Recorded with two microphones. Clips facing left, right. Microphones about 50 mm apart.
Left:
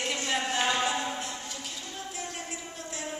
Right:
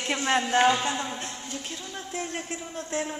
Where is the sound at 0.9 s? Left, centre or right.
Right.